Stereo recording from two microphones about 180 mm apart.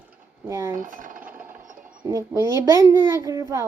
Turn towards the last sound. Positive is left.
turn(degrees=-20)  # may be behind; listen again after turning